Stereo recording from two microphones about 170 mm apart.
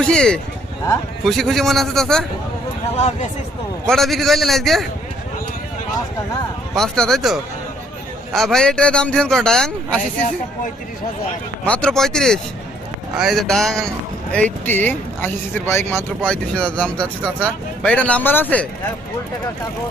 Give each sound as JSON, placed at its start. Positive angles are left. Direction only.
{"t": 0.0, "sound": "a man's voice", "side_deg": 5}
{"t": 2.9, "sound": "speech", "side_deg": 40}
{"t": 3.8, "sound": "a man's voice", "side_deg": 0}
{"t": 6.7, "sound": "a man's voice", "side_deg": 5}
{"t": 11.6, "sound": "a man's voice", "side_deg": 5}